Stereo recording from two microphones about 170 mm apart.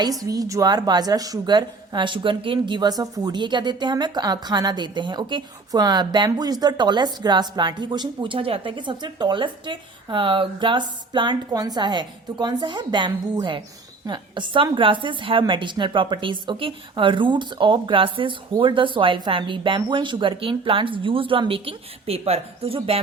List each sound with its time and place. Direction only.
0.0 s speech: 20° right (ahead or behind)